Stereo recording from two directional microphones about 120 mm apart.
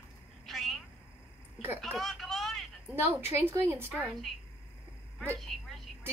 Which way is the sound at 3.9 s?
5° left (ahead or behind).